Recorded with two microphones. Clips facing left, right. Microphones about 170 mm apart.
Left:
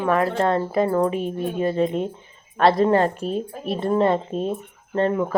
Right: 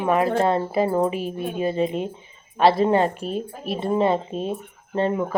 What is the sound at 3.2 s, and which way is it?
Speech, 30° left (ahead or behind).